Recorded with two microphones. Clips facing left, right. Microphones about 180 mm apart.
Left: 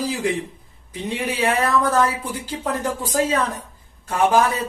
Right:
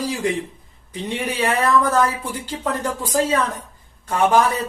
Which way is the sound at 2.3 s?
10° left (ahead or behind).